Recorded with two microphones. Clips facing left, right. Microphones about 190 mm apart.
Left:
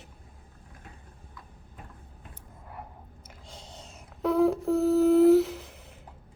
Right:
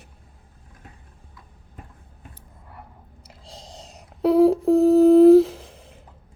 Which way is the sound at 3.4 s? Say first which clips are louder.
Right 5 dB; 35° right (ahead or behind).